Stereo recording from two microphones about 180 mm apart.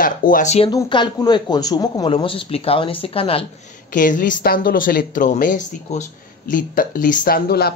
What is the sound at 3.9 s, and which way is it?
A woman's voice, 45° left (ahead or behind).